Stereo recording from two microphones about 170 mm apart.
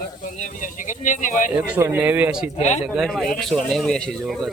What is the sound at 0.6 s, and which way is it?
Speech, 50° left (ahead or behind).